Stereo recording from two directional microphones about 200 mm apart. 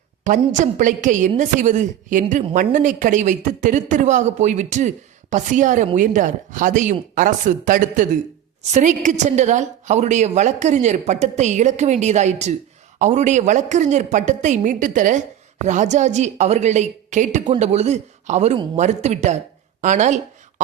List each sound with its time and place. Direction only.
0.3 s a woman's voice: 40° right (ahead or behind)